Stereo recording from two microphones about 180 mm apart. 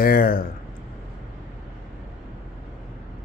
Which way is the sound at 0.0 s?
55° left (ahead or behind).